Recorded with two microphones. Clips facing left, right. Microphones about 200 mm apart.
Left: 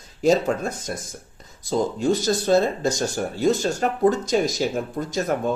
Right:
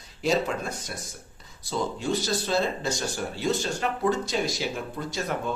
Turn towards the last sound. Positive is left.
turn(degrees=45)  # may be behind; listen again after turning